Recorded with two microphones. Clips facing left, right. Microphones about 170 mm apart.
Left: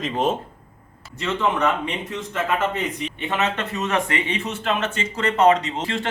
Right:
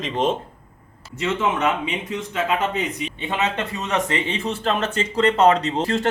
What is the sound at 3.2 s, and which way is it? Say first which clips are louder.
Speech: even; 15° right (ahead or behind).